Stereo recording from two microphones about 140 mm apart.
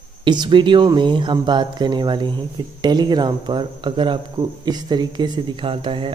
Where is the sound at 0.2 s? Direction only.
35° right (ahead or behind).